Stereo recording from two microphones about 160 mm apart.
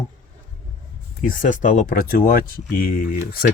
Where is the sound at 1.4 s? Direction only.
50° left (ahead or behind).